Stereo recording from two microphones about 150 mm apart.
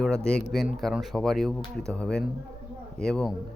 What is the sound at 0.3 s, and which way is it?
A man's voice, centre (ahead or behind).